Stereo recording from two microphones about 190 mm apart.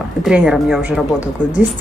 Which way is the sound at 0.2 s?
5° right (ahead or behind).